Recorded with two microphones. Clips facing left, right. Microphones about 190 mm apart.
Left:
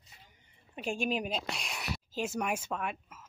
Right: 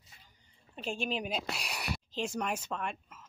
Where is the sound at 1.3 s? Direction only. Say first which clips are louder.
Even; 5° right (ahead or behind).